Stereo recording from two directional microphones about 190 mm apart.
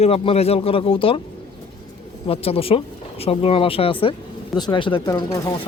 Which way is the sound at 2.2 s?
30° left (ahead or behind).